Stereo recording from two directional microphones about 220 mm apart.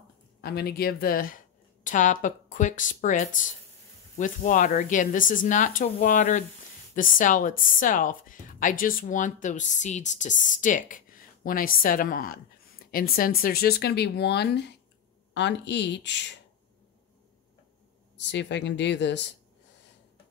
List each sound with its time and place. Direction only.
0.4 s speech: 45° left (ahead or behind)
18.1 s speech: 55° left (ahead or behind)